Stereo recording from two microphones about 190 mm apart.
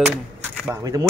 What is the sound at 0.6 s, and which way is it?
Speech, 20° right (ahead or behind).